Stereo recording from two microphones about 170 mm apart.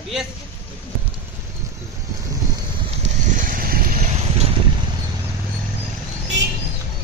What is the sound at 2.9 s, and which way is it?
Vehicle, 45° right (ahead or behind).